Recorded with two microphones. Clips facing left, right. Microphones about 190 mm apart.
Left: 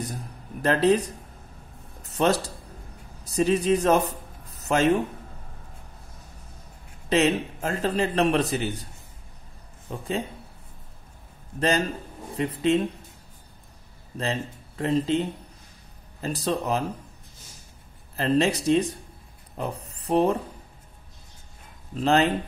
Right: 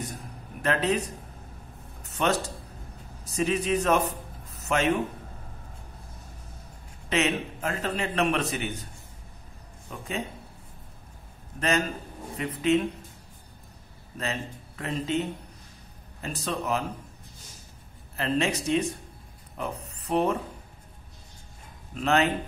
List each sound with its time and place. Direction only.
0.6 s speech: 35° left (ahead or behind)
2.0 s a man's voice: 35° left (ahead or behind)
4.6 s a sound: 35° left (ahead or behind)
7.1 s a man's voice: 35° left (ahead or behind)
9.8 s speech: 30° left (ahead or behind)
12.4 s a man's voice: 30° left (ahead or behind)
14.1 s a man's voice: 30° left (ahead or behind)
18.1 s a man's voice: 35° left (ahead or behind)
21.9 s a man's voice: 35° left (ahead or behind)